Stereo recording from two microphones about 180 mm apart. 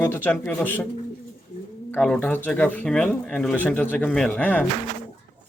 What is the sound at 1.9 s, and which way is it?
Speech, 10° left (ahead or behind).